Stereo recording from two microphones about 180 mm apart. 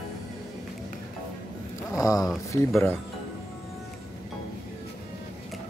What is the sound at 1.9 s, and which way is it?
Speech, 20° left (ahead or behind).